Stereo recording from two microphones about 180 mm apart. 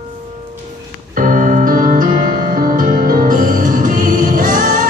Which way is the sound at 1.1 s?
50° right (ahead or behind).